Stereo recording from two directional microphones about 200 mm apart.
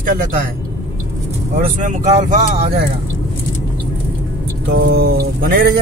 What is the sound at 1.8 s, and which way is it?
Speech, 40° right (ahead or behind).